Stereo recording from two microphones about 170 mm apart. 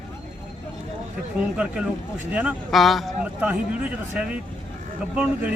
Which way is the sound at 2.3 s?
10° right (ahead or behind).